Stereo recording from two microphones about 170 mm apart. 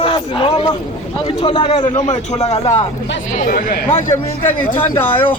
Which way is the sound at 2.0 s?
40° left (ahead or behind).